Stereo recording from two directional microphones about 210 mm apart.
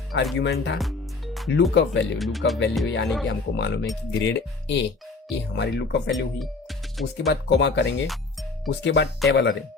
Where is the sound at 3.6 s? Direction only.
60° left (ahead or behind).